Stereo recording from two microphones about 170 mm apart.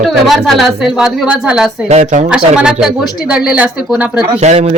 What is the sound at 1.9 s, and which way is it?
Speech, 45° right (ahead or behind).